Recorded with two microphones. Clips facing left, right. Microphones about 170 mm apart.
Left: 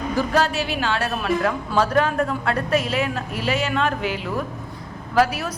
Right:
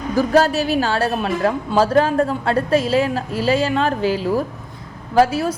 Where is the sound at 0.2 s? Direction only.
40° right (ahead or behind).